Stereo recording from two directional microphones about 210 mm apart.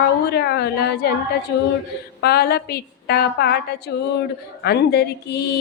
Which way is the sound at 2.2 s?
50° left (ahead or behind).